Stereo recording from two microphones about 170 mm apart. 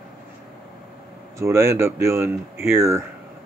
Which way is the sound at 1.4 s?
15° right (ahead or behind).